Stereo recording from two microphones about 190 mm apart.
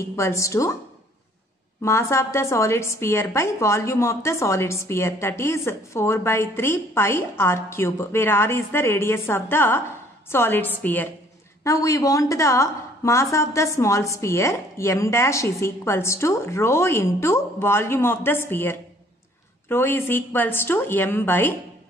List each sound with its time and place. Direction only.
0.1 s a woman's voice: 15° left (ahead or behind)
1.8 s a woman's voice: 15° left (ahead or behind)